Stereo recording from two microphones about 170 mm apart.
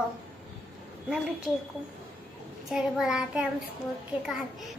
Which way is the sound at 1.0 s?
5° right (ahead or behind).